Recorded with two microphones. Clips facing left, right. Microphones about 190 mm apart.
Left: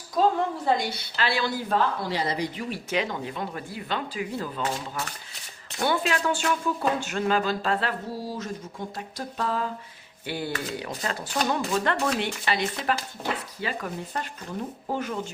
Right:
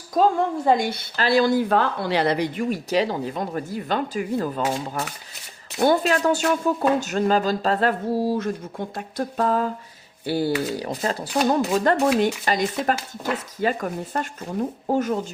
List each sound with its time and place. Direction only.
0.1 s a woman's voice: 50° right (ahead or behind)